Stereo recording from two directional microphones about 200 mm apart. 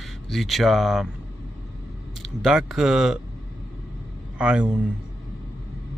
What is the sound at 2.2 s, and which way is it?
Speech, centre (ahead or behind).